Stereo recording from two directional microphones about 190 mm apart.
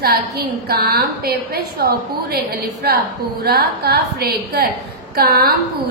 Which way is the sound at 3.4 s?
55° right (ahead or behind).